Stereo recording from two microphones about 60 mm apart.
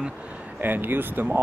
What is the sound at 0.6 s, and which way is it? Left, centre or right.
Speech, right.